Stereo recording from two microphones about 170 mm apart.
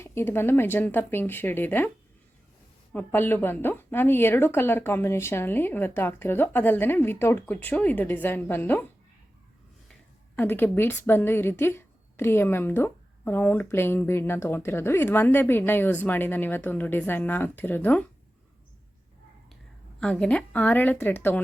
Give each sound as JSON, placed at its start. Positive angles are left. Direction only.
{"t": 0.0, "sound": "a woman's voice", "side_deg": 15}
{"t": 2.9, "sound": "a woman's voice", "side_deg": 10}
{"t": 9.9, "sound": "a woman's voice", "side_deg": 10}
{"t": 20.0, "sound": "a woman's voice", "side_deg": 5}